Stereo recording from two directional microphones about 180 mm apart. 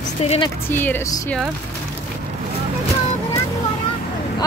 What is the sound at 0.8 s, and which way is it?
Speech, 10° left (ahead or behind).